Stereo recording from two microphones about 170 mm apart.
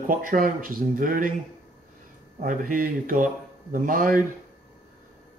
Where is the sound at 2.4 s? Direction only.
55° right (ahead or behind).